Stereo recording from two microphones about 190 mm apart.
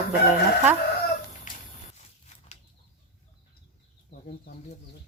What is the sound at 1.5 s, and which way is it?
Squish, 45° left (ahead or behind).